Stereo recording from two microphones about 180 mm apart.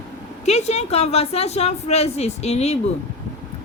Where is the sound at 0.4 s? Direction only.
35° left (ahead or behind).